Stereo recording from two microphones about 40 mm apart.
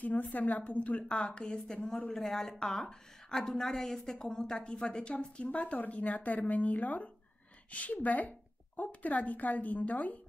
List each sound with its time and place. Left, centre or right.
0.0 s a woman's voice: left
1.5 s a woman's voice: centre; by 10.2 s left